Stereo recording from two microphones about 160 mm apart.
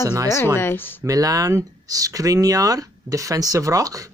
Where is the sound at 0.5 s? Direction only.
15° left (ahead or behind).